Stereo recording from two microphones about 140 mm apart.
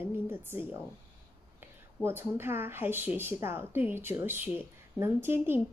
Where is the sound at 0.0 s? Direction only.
15° right (ahead or behind).